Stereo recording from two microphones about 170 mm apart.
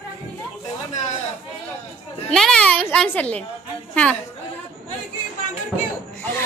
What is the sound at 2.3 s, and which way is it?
A child's voice, 5° left (ahead or behind).